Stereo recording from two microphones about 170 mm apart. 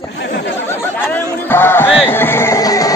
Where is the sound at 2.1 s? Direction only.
15° left (ahead or behind).